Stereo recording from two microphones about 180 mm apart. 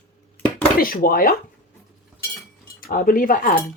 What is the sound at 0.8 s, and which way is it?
Speech, 50° left (ahead or behind).